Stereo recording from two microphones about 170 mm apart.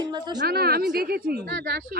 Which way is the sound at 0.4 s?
65° right (ahead or behind).